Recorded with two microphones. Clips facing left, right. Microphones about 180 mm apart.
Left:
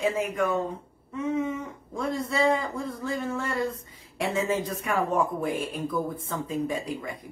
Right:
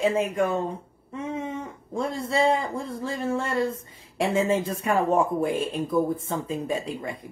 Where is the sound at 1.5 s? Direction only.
30° right (ahead or behind).